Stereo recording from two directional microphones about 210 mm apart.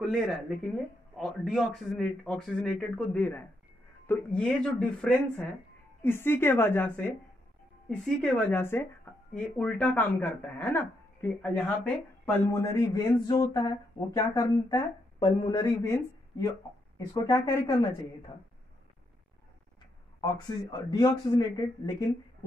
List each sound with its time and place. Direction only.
0.0 s speech: centre (ahead or behind); by 18.3 s 20° left (ahead or behind)
20.2 s speech: 20° left (ahead or behind)